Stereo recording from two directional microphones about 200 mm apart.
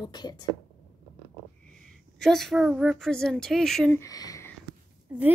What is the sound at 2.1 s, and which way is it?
A woman's voice, centre (ahead or behind).